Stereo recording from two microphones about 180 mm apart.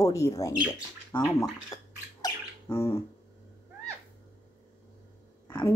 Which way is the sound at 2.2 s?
15° left (ahead or behind).